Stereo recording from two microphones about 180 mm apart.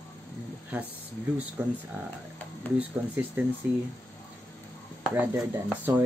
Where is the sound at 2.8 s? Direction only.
10° right (ahead or behind).